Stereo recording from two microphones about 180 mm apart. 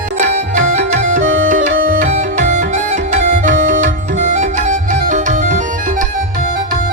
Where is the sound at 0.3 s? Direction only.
40° right (ahead or behind).